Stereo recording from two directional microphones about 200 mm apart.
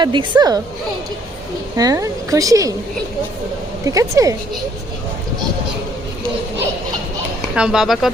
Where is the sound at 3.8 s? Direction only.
15° right (ahead or behind).